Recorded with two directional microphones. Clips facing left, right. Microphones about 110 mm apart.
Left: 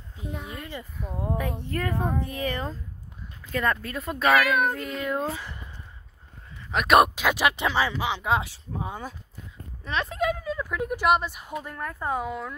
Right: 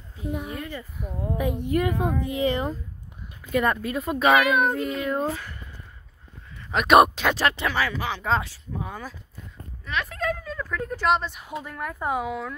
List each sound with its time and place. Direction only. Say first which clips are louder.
0.3 s speech: right 6 dB; 15° right (ahead or behind)
0.6 s speech: right 3 dB; 20° left (ahead or behind)
1.4 s speech: right 6 dB; 15° right (ahead or behind)
6.7 s speech: right 2 dB; centre (ahead or behind)
7.3 s speech: left 1 dB; 15° left (ahead or behind)
10.3 s speech: left 1 dB; 5° left (ahead or behind)